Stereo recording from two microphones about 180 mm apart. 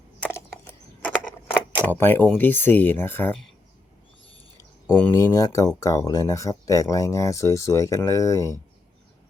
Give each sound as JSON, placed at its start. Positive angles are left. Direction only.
{"t": 0.2, "sound": "typing", "side_deg": 15}
{"t": 1.9, "sound": "speech", "side_deg": 10}
{"t": 4.9, "sound": "speech", "side_deg": 10}